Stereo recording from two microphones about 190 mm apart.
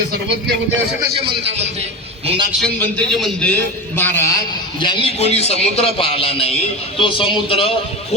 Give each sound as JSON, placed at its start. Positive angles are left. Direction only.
{"t": 1.1, "sound": "a man's voice", "side_deg": -30}
{"t": 2.6, "sound": "a man's voice", "side_deg": 5}
{"t": 4.8, "sound": "a man's voice", "side_deg": 25}